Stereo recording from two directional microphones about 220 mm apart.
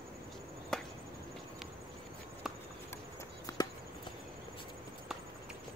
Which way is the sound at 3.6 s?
15° left (ahead or behind).